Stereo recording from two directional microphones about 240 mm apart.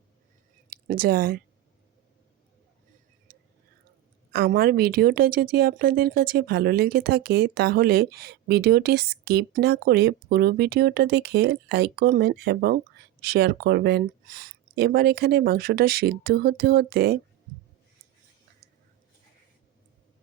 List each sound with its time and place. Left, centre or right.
0.7 s speech: right
4.3 s speech: right